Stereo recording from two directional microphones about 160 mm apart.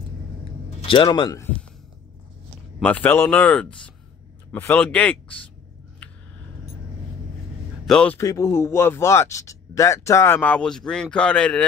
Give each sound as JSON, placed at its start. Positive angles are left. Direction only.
{"t": 0.7, "sound": "speech", "side_deg": 30}
{"t": 2.8, "sound": "speech", "side_deg": 10}
{"t": 7.8, "sound": "a man's voice", "side_deg": 5}
{"t": 8.2, "sound": "speech", "side_deg": 20}